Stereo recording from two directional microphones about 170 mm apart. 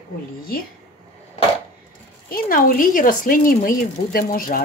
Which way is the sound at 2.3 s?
55° left (ahead or behind).